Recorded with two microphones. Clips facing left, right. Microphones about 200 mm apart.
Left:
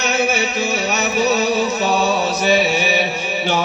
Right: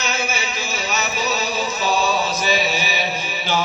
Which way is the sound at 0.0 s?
65° left (ahead or behind).